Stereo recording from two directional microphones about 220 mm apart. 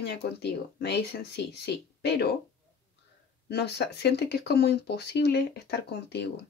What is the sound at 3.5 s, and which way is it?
Speech, 50° left (ahead or behind).